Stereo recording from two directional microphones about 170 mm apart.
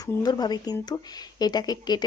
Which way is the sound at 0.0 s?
20° left (ahead or behind).